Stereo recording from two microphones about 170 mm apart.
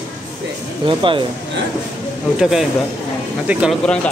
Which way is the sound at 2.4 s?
Centre (ahead or behind).